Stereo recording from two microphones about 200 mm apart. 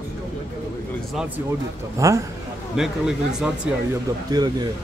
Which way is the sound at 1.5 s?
15° right (ahead or behind).